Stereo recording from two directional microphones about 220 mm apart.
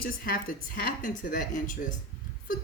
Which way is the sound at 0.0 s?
40° left (ahead or behind).